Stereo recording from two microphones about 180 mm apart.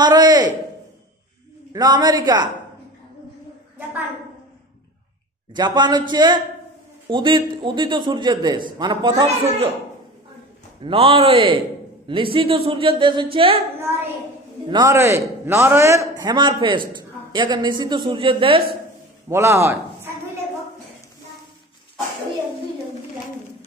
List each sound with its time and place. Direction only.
0.0 s a sound: 20° right (ahead or behind)
1.7 s a man's voice: 20° right (ahead or behind)
5.5 s a man's voice: 25° right (ahead or behind)
10.8 s a man's voice: 30° right (ahead or behind)
14.7 s a man's voice: 20° right (ahead or behind)
19.2 s a sound: 15° right (ahead or behind)